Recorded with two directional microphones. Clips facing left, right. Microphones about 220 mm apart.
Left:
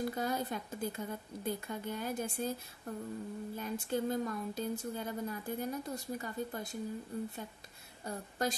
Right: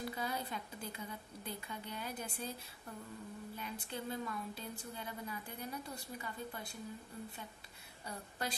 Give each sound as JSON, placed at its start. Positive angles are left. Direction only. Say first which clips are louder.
{"t": 0.1, "sound": "speech", "louder": "left 6 dB", "side_deg": 45}
{"t": 3.5, "sound": "speech", "louder": "left 10 dB", "side_deg": 45}
{"t": 8.1, "sound": "speech", "louder": "left 7 dB", "side_deg": 45}